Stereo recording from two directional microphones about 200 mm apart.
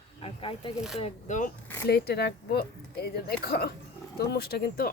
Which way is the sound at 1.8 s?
55° left (ahead or behind).